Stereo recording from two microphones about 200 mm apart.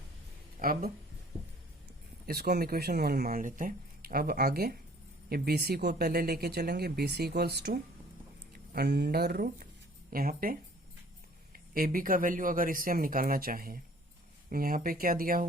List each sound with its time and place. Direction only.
0.6 s speech: 45° right (ahead or behind)
2.2 s speech: 50° right (ahead or behind)